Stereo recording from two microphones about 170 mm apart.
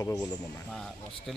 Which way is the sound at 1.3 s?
Centre (ahead or behind).